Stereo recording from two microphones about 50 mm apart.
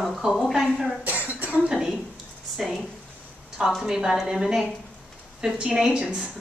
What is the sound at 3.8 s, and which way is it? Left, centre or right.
A woman's voice, centre.